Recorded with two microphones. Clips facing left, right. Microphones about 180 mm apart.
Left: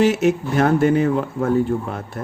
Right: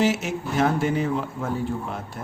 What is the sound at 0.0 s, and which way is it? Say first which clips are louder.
Speech: left 7 dB; 60° left (ahead or behind).